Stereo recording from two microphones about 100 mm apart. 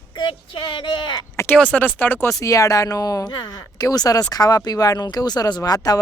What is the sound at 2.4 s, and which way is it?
A woman's voice, 35° left (ahead or behind).